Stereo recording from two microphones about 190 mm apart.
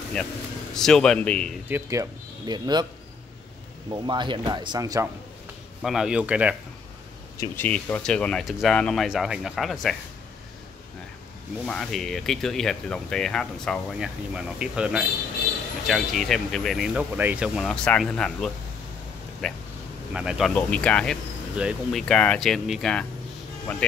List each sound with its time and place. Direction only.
0.2 s speech: 5° left (ahead or behind)
1.7 s speech: 15° right (ahead or behind)
3.9 s speech: 25° right (ahead or behind)
5.8 s speech: centre (ahead or behind)
7.3 s speech: 10° left (ahead or behind)
11.6 s speech: 5° left (ahead or behind)